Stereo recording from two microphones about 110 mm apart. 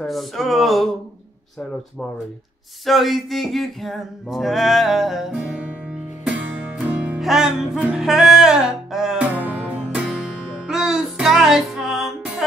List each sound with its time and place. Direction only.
0.0 s music: centre (ahead or behind)
2.8 s music: centre (ahead or behind)
9.3 s music: 15° right (ahead or behind)